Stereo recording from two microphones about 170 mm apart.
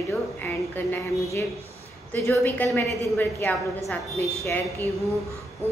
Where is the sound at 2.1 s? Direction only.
10° left (ahead or behind).